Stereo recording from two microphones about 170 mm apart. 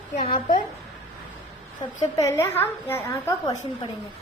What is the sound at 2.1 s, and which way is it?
A woman's voice, 15° left (ahead or behind).